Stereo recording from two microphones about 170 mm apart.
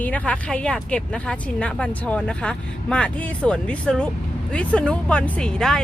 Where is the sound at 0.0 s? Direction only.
10° left (ahead or behind).